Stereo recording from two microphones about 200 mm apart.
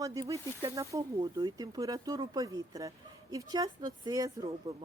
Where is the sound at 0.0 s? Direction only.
15° right (ahead or behind).